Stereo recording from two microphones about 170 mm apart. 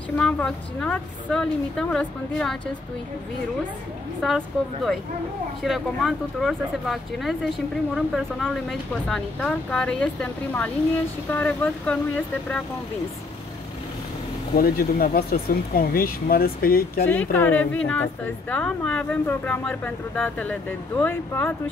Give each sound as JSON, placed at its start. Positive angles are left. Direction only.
{"t": 0.2, "sound": "speech", "side_deg": 5}
{"t": 5.6, "sound": "a woman's voice", "side_deg": 0}
{"t": 14.5, "sound": "speech", "side_deg": 60}
{"t": 17.1, "sound": "a woman's voice", "side_deg": 10}